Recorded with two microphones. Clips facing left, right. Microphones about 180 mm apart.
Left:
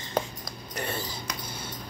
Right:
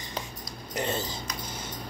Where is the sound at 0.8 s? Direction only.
20° right (ahead or behind).